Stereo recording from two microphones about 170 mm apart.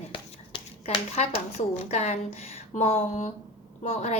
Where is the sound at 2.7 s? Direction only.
40° left (ahead or behind).